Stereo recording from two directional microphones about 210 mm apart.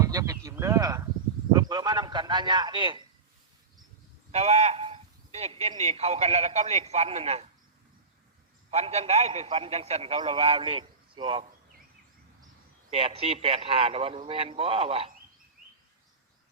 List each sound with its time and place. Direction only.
0.0 s a sound: 15° right (ahead or behind)
4.3 s speech: 30° right (ahead or behind)
8.7 s a man's voice: 30° right (ahead or behind)
12.9 s a man's voice: 25° right (ahead or behind)